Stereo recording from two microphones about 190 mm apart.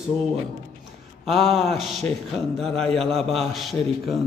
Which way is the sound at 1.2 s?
Centre (ahead or behind).